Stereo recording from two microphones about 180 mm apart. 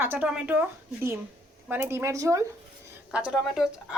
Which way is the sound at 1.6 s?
10° right (ahead or behind).